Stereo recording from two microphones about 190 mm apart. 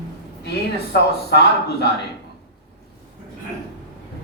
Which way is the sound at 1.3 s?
60° left (ahead or behind).